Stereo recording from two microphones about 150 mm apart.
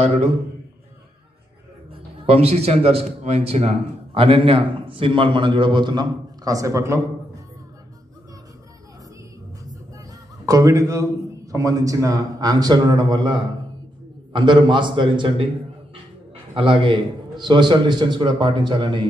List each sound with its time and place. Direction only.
2.2 s a man's voice: 45° right (ahead or behind); by 7.0 s 20° right (ahead or behind)
9.9 s music: 20° right (ahead or behind)
11.5 s a man's voice: 25° right (ahead or behind)
16.5 s a man's voice: 35° right (ahead or behind)